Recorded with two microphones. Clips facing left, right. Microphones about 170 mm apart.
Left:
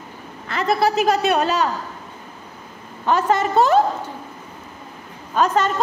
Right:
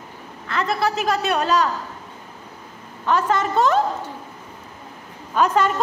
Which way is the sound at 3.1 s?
5° left (ahead or behind).